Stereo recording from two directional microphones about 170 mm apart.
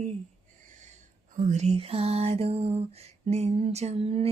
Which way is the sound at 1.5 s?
40° right (ahead or behind).